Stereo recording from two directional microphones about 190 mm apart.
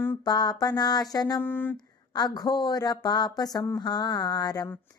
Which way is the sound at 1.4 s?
10° left (ahead or behind).